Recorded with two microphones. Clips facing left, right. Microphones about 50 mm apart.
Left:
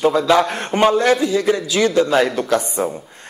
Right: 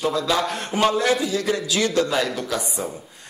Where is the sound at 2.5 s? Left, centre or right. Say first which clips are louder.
Left 8 dB; left.